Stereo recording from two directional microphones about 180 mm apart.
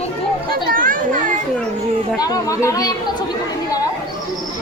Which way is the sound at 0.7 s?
50° right (ahead or behind).